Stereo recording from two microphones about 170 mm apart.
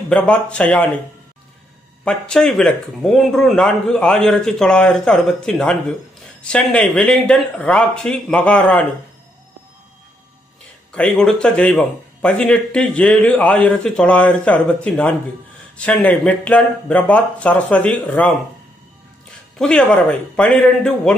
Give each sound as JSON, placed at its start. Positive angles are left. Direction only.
{"t": 0.1, "sound": "a man's voice", "side_deg": 5}
{"t": 2.0, "sound": "a man's voice", "side_deg": 5}
{"t": 10.9, "sound": "a man's voice", "side_deg": 5}
{"t": 19.6, "sound": "a man's voice", "side_deg": 5}